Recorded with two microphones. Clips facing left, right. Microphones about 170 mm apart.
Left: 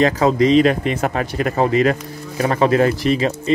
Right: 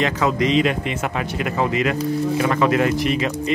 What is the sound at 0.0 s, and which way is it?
Speech, 35° left (ahead or behind).